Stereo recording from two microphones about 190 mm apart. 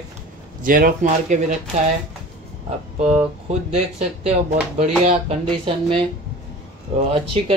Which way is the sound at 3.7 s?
35° right (ahead or behind).